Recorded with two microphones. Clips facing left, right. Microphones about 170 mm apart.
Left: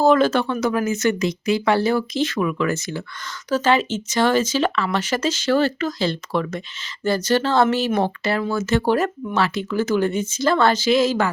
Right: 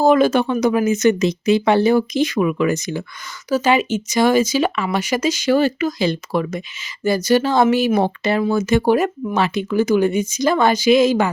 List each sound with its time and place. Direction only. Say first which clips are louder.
0.0 s speech: right 2 dB; 15° right (ahead or behind)